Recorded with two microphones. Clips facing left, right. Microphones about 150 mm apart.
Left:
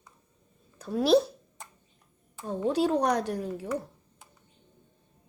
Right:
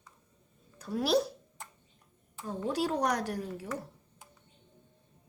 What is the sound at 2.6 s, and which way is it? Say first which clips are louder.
A woman's voice: left 5 dB; 20° left (ahead or behind).